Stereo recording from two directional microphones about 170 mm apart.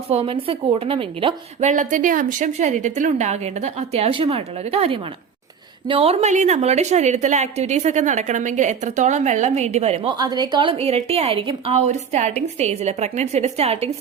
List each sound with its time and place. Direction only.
0.1 s a woman's voice: 35° right (ahead or behind)
1.7 s a woman's voice: 50° right (ahead or behind)